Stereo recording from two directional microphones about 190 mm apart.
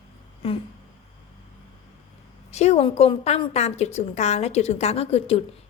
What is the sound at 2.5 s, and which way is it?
A woman's voice, 35° left (ahead or behind).